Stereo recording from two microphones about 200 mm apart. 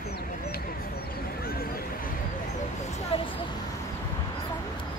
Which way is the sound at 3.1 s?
25° left (ahead or behind).